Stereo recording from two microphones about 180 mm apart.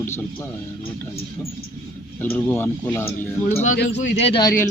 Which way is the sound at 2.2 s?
10° left (ahead or behind).